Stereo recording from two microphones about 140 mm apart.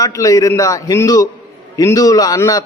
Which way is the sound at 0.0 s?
25° left (ahead or behind).